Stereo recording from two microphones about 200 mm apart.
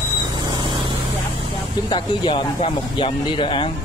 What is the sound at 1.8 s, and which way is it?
Speech, 25° left (ahead or behind).